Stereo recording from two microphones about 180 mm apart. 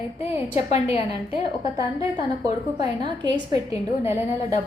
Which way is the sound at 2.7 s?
25° right (ahead or behind).